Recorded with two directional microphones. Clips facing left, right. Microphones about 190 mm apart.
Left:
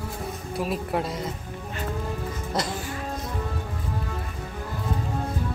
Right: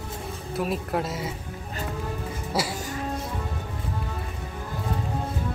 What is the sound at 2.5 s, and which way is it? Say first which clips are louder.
Speech: right 1 dB; 10° right (ahead or behind).